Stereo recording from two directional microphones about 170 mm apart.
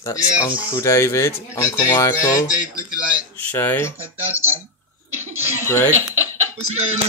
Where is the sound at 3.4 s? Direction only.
10° left (ahead or behind).